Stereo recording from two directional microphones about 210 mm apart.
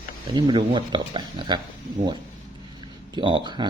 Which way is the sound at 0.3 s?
25° right (ahead or behind).